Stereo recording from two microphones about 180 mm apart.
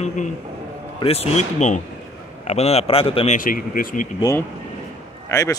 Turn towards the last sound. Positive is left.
turn(degrees=15)  # may be behind; listen again after turning